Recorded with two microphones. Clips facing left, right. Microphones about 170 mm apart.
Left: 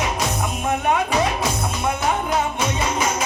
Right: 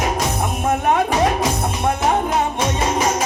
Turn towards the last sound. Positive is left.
turn(degrees=-40)  # may be behind; listen again after turning